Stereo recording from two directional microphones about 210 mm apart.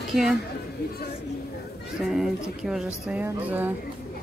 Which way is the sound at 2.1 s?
Centre (ahead or behind).